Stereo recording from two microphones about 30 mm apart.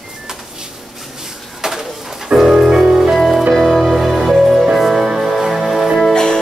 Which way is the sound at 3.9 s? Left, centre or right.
Centre.